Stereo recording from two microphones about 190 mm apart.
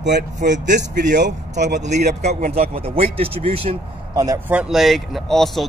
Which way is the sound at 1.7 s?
40° right (ahead or behind).